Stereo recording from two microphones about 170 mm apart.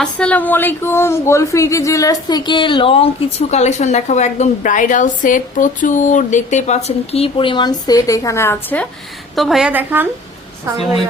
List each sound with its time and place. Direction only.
0.0 s a woman's voice: 5° left (ahead or behind)
9.3 s a woman's voice: centre (ahead or behind)